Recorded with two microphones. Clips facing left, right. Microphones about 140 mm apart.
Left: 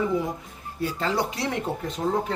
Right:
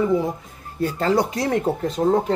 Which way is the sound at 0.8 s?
45° right (ahead or behind).